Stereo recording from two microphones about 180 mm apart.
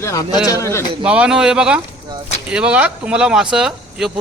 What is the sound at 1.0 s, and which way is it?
Speech, 5° right (ahead or behind).